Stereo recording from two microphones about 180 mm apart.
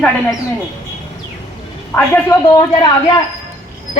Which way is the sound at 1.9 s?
15° left (ahead or behind).